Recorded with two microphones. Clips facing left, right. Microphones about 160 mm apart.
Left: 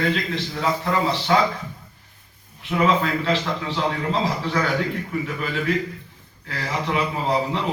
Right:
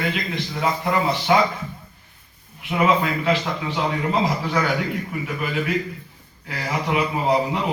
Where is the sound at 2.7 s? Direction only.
10° right (ahead or behind).